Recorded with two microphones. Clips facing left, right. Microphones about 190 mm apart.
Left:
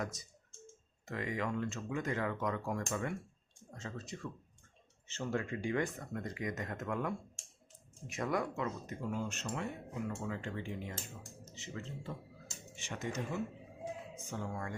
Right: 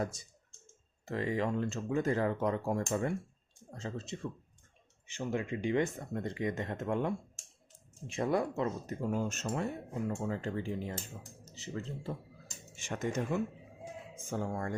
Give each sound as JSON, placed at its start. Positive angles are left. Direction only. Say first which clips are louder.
{"t": 0.0, "sound": "speech", "louder": "right 4 dB", "side_deg": -30}
{"t": 5.0, "sound": "speech", "louder": "right 2 dB", "side_deg": -15}
{"t": 12.7, "sound": "speech", "louder": "right 5 dB", "side_deg": -45}